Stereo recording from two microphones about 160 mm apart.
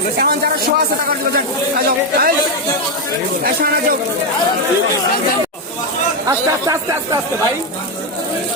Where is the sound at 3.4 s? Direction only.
75° right (ahead or behind).